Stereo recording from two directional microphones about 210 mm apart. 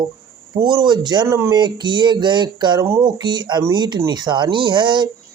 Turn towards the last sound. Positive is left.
turn(degrees=-20)  # may be behind; listen again after turning